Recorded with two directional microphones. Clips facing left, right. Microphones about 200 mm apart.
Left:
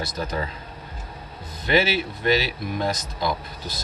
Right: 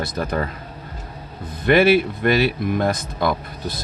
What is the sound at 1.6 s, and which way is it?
Speech, 55° right (ahead or behind).